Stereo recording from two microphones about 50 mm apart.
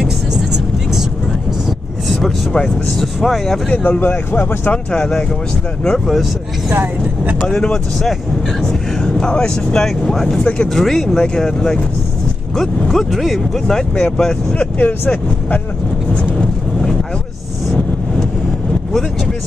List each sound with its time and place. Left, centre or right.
0.0 s vehicle: centre
2.2 s speech: centre
3.9 s speech: left
4.9 s speech: centre
7.4 s speech: centre
12.9 s speech: centre
13.7 s speech: centre
14.8 s speech: left
16.1 s vehicle: left